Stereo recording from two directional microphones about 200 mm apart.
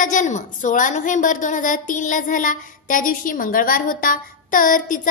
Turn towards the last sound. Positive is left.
turn(degrees=40)  # may be behind; listen again after turning